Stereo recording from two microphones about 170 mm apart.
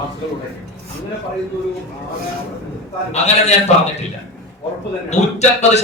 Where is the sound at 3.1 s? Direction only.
40° left (ahead or behind).